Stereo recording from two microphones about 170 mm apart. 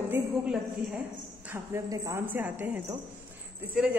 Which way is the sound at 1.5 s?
15° right (ahead or behind).